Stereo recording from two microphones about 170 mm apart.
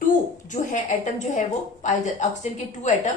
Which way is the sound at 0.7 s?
45° left (ahead or behind).